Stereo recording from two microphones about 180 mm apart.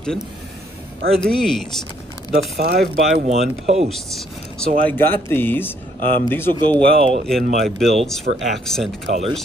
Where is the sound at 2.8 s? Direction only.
Centre (ahead or behind).